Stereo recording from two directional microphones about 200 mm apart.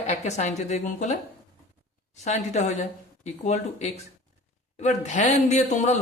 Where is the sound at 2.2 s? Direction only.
35° left (ahead or behind).